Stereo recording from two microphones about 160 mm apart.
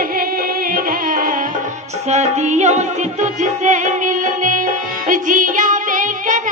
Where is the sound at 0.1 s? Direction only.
65° right (ahead or behind).